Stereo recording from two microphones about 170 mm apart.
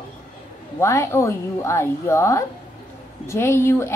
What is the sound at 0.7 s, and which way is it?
A woman's voice, 15° left (ahead or behind).